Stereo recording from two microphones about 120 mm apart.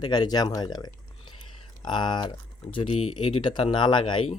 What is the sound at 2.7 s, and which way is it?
Speech, 55° left (ahead or behind).